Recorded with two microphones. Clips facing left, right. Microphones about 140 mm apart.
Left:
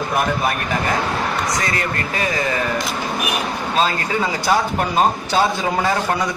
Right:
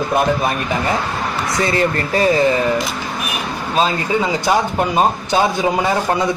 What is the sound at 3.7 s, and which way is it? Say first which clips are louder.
Speech: right 3 dB; 20° right (ahead or behind).